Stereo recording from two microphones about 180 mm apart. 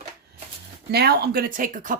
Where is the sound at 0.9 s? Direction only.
60° right (ahead or behind).